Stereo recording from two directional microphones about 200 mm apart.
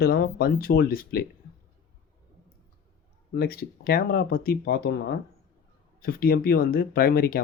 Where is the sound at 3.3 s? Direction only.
50° left (ahead or behind).